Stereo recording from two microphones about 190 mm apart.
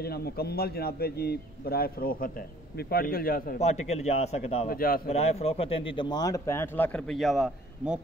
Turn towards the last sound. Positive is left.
turn(degrees=0)  # may be behind; listen again after turning